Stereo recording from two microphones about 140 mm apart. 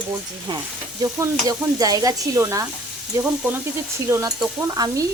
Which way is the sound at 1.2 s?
25° right (ahead or behind).